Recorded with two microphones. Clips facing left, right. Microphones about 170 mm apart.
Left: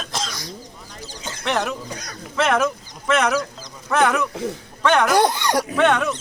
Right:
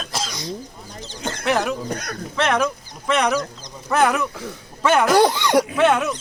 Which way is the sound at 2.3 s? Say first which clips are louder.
Left 1 dB; centre (ahead or behind).